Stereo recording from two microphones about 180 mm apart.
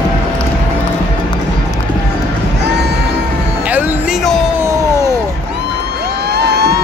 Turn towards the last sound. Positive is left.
turn(degrees=-65)  # may be behind; listen again after turning